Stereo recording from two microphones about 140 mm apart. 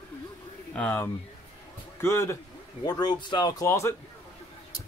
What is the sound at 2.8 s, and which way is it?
Speech, 30° left (ahead or behind).